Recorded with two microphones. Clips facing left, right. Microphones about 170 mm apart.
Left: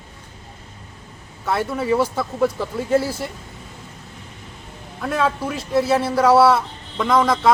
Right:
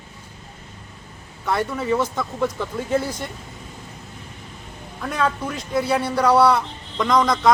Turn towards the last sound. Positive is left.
turn(degrees=5)  # may be behind; listen again after turning